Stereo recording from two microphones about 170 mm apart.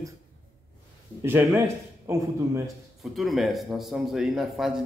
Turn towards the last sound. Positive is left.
turn(degrees=0)  # may be behind; listen again after turning